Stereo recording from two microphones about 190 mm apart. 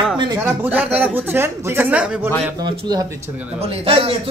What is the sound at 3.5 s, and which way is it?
Speech, 30° right (ahead or behind).